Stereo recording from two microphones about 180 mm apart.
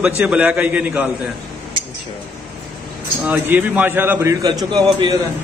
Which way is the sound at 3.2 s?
10° right (ahead or behind).